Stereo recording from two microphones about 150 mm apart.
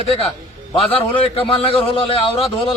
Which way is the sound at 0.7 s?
35° left (ahead or behind).